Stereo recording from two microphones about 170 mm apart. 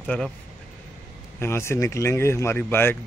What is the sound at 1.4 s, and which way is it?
Speech, 15° left (ahead or behind).